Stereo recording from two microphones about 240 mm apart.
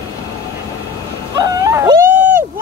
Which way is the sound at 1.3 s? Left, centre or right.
Centre.